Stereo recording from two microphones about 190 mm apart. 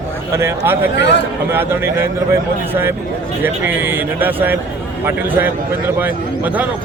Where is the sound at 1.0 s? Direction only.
65° left (ahead or behind).